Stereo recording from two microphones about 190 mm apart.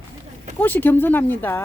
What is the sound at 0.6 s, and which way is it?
Speech, 10° left (ahead or behind).